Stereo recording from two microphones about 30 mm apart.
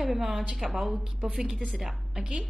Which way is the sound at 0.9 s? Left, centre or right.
Centre.